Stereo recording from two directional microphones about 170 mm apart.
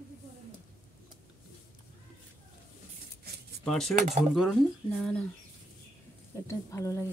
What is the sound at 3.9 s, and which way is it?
Speech, 40° right (ahead or behind).